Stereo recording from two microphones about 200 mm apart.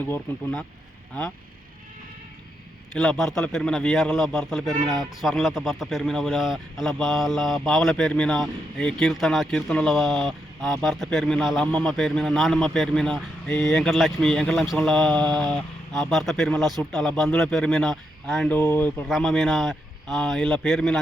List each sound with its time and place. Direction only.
0.0 s speech: 10° left (ahead or behind)
2.9 s a man's voice: centre (ahead or behind)